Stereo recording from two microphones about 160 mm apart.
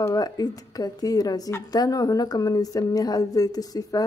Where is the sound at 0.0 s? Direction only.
25° left (ahead or behind).